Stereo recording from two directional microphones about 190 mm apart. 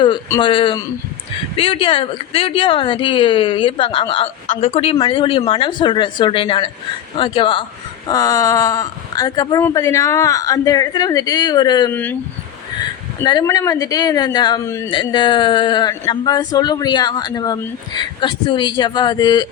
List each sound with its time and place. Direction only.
0.3 s speech: 25° left (ahead or behind)
13.2 s speech: 20° left (ahead or behind)